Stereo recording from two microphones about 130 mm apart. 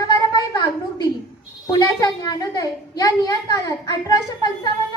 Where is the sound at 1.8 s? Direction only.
30° left (ahead or behind).